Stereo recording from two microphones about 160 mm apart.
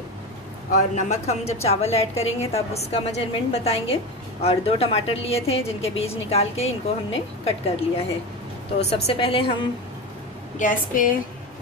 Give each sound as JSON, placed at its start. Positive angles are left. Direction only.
{"t": 0.7, "sound": "a woman's voice", "side_deg": 50}
{"t": 8.9, "sound": "a woman's voice", "side_deg": 40}
{"t": 10.6, "sound": "a woman's voice", "side_deg": 55}